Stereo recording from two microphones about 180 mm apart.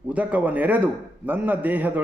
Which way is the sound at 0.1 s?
10° right (ahead or behind).